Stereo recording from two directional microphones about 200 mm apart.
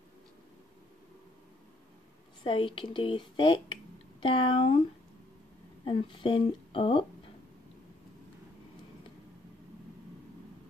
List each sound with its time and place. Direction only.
2.4 s speech: 25° left (ahead or behind)
5.9 s speech: 25° left (ahead or behind)